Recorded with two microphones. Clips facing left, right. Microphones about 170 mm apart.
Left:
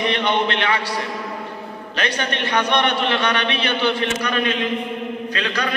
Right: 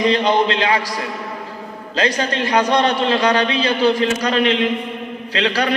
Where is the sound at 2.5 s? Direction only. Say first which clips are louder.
Right 4 dB; 30° right (ahead or behind).